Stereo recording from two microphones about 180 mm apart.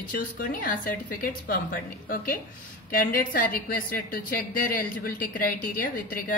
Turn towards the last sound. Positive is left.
turn(degrees=55)  # may be behind; listen again after turning